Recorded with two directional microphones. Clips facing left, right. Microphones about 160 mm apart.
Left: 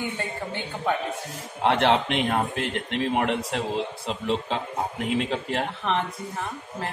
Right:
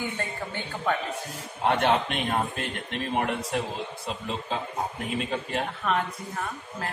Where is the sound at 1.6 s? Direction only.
80° left.